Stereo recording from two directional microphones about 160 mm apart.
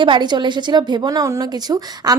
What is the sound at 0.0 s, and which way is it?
A woman's voice, 30° right (ahead or behind).